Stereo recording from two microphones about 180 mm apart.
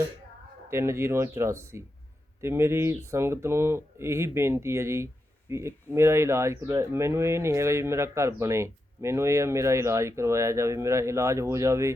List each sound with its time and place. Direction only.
0.7 s speech: 15° right (ahead or behind)